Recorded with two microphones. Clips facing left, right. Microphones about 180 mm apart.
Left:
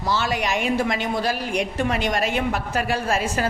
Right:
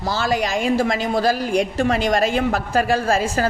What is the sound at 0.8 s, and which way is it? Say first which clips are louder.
A woman's voice: right 4 dB; 35° right (ahead or behind).